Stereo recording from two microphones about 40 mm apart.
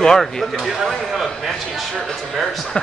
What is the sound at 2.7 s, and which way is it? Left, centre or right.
Speech, left.